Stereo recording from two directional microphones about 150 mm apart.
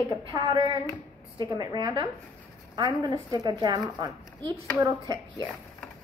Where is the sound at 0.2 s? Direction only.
30° right (ahead or behind).